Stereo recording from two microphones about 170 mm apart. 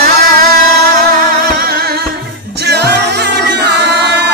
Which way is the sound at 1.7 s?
65° right (ahead or behind).